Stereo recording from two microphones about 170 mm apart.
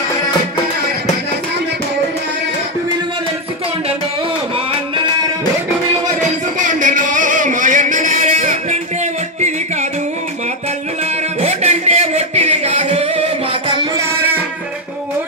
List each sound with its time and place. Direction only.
6.6 s music: 50° right (ahead or behind)
11.4 s singing: 40° right (ahead or behind)